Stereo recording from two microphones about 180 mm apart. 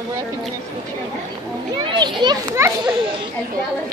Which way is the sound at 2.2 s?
25° right (ahead or behind).